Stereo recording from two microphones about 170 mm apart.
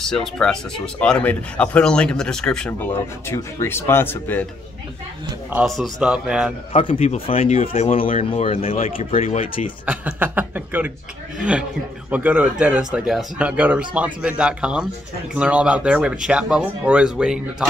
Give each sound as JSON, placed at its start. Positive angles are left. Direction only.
{"t": 0.0, "sound": "speech", "side_deg": 5}
{"t": 5.5, "sound": "speech", "side_deg": -5}
{"t": 6.7, "sound": "speech", "side_deg": 35}
{"t": 9.8, "sound": "speech", "side_deg": -10}
{"t": 12.1, "sound": "speech", "side_deg": -10}